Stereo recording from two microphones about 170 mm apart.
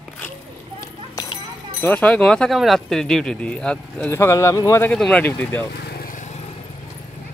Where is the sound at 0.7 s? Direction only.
20° left (ahead or behind).